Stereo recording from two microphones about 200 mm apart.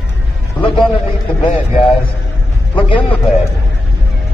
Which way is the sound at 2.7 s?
25° left (ahead or behind).